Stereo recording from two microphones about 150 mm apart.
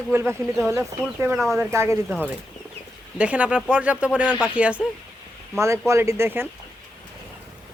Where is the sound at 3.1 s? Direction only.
10° right (ahead or behind).